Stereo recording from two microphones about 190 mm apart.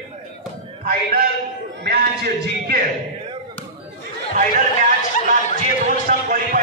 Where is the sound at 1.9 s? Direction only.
55° right (ahead or behind).